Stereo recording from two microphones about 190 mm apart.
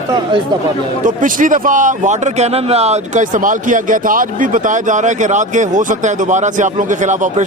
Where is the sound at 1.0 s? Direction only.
45° right (ahead or behind).